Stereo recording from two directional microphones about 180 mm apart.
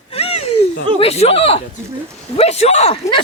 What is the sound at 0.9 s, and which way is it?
Speech, 35° left (ahead or behind).